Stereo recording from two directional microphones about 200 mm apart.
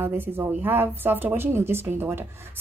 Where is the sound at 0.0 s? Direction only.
10° right (ahead or behind).